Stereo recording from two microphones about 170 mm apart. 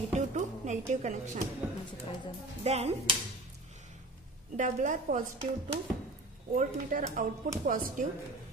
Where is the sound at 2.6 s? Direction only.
40° right (ahead or behind).